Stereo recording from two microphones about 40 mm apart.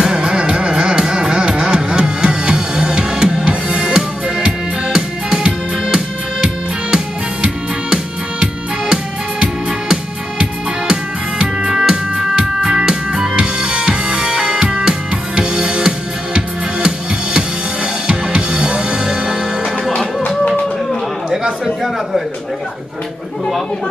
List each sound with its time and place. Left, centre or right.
0.0 s music: centre